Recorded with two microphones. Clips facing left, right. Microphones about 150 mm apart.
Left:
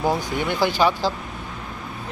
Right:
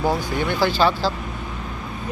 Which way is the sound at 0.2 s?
20° left (ahead or behind).